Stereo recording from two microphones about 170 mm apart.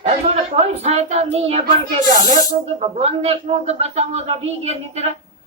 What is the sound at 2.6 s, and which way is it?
A woman's voice, 40° right (ahead or behind).